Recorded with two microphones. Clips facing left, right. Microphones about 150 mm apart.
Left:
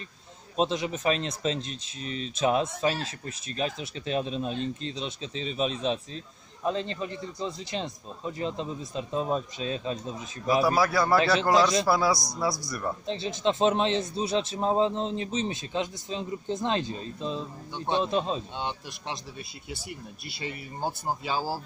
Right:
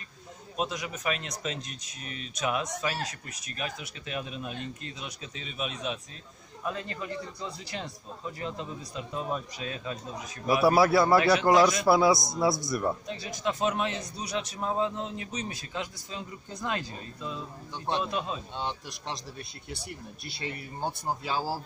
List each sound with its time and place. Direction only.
0.6 s speech: 30° left (ahead or behind)
10.6 s a man's voice: 25° right (ahead or behind)
11.1 s speech: 25° left (ahead or behind)
11.9 s a man's voice: 25° right (ahead or behind)
13.0 s speech: 25° left (ahead or behind)
17.7 s speech: centre (ahead or behind)
18.0 s speech: 25° left (ahead or behind)
18.6 s speech: centre (ahead or behind)